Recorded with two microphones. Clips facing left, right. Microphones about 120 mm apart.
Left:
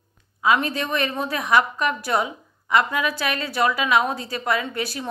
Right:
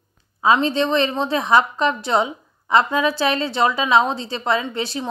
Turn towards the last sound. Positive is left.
turn(degrees=-25)  # may be behind; listen again after turning